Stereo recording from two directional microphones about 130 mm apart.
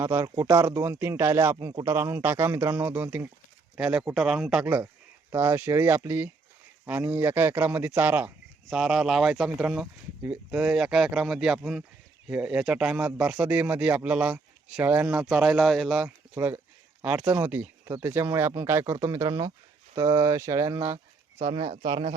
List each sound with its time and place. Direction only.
0.0 s a man's voice: 20° right (ahead or behind)
4.6 s a man's voice: 20° right (ahead or behind); by 16.0 s centre (ahead or behind)
16.0 s a man's voice: 20° right (ahead or behind)
21.3 s speech: 45° right (ahead or behind)